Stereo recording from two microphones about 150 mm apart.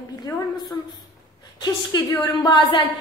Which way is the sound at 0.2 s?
30° left (ahead or behind).